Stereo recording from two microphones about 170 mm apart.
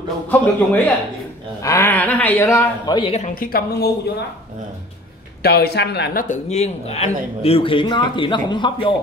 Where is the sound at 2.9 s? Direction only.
35° left (ahead or behind).